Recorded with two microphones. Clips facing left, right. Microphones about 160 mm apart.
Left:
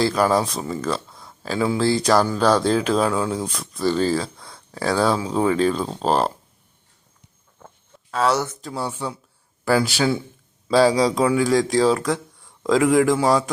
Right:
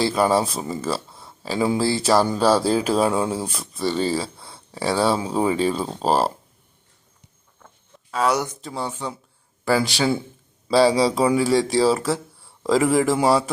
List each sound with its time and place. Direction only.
0.0 s speech: 5° right (ahead or behind)
0.8 s a sound: 5° right (ahead or behind)
1.5 s speech: 15° right (ahead or behind)
1.8 s speech: 5° right (ahead or behind)
3.1 s speech: 20° right (ahead or behind)
3.3 s speech: 5° right (ahead or behind)
8.1 s speech: 10° right (ahead or behind)
8.6 s speech: 5° left (ahead or behind)